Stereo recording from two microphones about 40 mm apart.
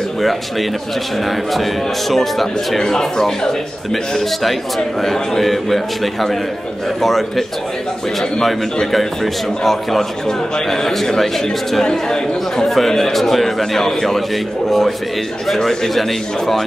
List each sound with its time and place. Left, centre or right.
0.2 s a man's voice: centre
7.0 s a man's voice: centre